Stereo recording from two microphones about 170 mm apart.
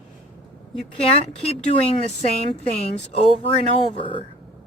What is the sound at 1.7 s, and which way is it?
Speech, 35° left (ahead or behind).